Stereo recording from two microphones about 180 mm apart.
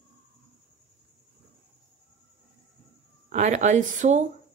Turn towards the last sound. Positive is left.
turn(degrees=-40)  # may be behind; listen again after turning